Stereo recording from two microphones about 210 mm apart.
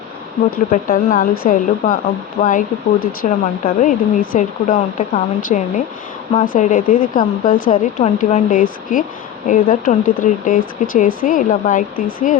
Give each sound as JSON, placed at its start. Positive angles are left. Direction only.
{"t": 0.7, "sound": "speech", "side_deg": 40}